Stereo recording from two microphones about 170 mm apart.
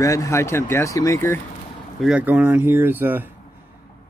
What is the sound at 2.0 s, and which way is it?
Speech, 5° right (ahead or behind).